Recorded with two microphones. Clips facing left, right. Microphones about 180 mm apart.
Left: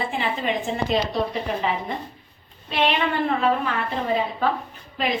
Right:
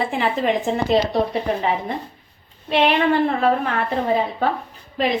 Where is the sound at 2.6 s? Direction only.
65° right (ahead or behind).